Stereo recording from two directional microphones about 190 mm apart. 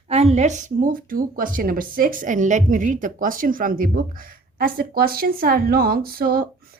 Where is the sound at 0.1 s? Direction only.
35° right (ahead or behind).